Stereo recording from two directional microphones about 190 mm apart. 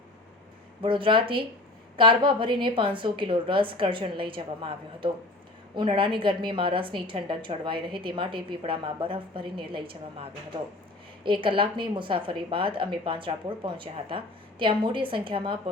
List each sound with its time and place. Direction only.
0.8 s a woman's voice: 25° right (ahead or behind)
11.3 s a woman's voice: 25° right (ahead or behind)